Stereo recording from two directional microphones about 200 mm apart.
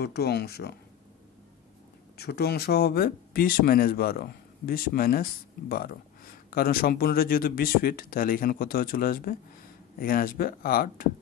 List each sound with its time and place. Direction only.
0.0 s speech: 55° left (ahead or behind)
2.1 s speech: 55° left (ahead or behind)